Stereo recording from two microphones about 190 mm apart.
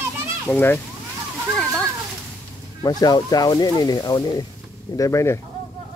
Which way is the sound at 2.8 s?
20° left (ahead or behind).